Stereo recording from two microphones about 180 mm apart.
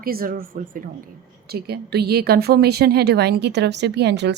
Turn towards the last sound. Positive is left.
turn(degrees=-70)  # may be behind; listen again after turning